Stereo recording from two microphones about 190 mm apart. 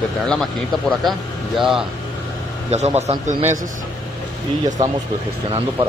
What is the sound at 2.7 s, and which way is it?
Speech, 35° right (ahead or behind).